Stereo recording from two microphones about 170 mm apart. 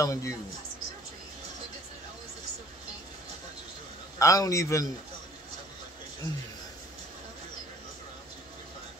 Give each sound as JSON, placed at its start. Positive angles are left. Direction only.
{"t": 0.0, "sound": "a man's voice", "side_deg": 20}
{"t": 4.2, "sound": "a man's voice", "side_deg": 20}